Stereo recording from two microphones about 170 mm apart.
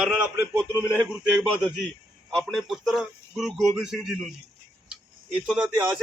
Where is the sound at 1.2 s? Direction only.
5° right (ahead or behind).